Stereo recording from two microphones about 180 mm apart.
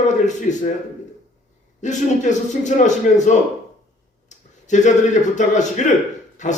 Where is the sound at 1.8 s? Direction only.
40° left (ahead or behind).